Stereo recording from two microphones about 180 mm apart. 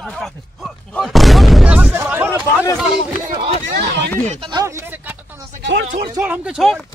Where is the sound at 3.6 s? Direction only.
60° right (ahead or behind).